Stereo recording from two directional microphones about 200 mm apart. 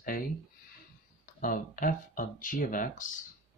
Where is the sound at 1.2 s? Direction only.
45° left (ahead or behind).